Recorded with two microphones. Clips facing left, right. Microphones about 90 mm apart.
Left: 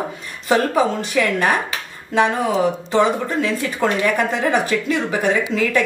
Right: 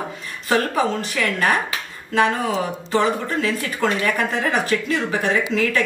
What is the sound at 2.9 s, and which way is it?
Speech, 20° left (ahead or behind).